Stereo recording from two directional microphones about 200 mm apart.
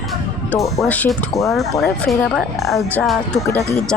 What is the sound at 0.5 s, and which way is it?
Speech, 10° left (ahead or behind).